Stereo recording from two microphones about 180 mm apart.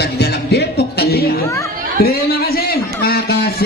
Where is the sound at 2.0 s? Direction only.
60° left (ahead or behind).